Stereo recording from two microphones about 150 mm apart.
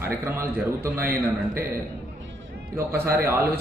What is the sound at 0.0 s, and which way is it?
A man's voice, 15° right (ahead or behind).